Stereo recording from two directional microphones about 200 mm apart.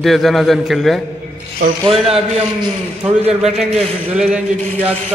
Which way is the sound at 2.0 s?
30° right (ahead or behind).